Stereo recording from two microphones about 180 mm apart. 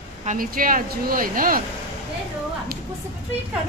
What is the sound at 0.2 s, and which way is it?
Speech, 45° right (ahead or behind).